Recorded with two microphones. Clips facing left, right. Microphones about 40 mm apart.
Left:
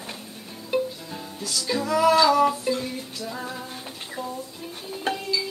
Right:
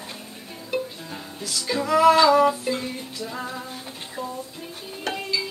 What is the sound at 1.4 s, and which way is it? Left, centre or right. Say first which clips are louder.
Music: even; right.